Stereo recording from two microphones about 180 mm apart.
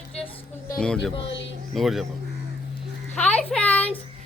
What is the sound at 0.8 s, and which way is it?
Speech, 5° left (ahead or behind).